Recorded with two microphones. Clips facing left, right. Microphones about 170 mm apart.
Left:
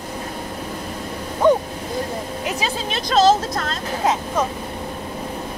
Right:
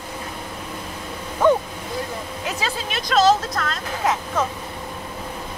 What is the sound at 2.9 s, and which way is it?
Speech, 30° left (ahead or behind).